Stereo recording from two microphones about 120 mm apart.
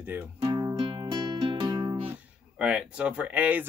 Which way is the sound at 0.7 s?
45° right (ahead or behind).